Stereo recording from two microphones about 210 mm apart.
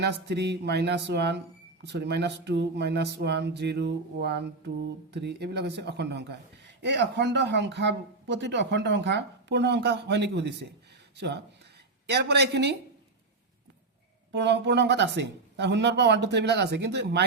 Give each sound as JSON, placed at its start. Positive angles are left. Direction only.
{"t": 0.0, "sound": "speech", "side_deg": -55}
{"t": 14.3, "sound": "speech", "side_deg": -55}